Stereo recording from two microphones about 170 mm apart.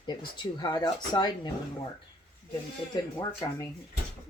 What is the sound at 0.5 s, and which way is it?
Speech, 25° left (ahead or behind).